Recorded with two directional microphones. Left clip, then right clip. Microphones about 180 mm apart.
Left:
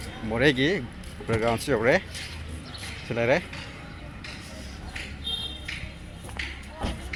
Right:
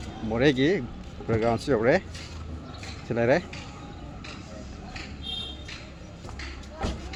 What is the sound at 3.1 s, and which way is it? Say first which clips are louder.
Speech: right 1 dB; 20° right (ahead or behind).